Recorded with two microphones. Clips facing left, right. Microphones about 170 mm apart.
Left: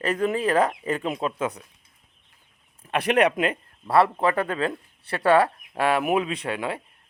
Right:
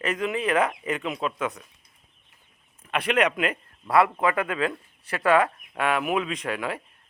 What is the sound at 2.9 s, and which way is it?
Speech, 35° left (ahead or behind).